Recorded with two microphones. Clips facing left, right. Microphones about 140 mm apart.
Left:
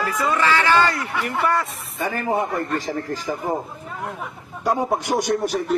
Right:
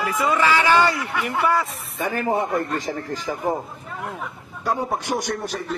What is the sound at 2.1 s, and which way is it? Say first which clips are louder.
Speech: right 1 dB; 20° right (ahead or behind).